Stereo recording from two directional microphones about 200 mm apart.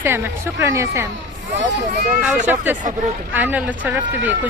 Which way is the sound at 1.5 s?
60° right (ahead or behind).